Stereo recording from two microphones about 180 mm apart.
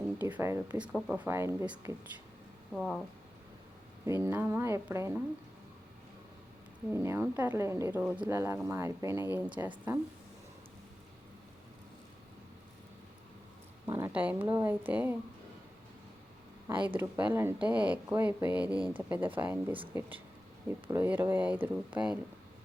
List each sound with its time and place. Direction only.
0.2 s speech: 10° right (ahead or behind)
2.7 s speech: centre (ahead or behind)
4.0 s speech: 15° right (ahead or behind)
6.9 s speech: 15° right (ahead or behind)
13.8 s speech: 15° right (ahead or behind)
16.7 s speech: 25° right (ahead or behind)
17.0 s speech: 10° right (ahead or behind)